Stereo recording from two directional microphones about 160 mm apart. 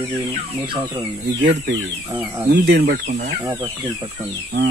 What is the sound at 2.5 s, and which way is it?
Speech, 75° right (ahead or behind).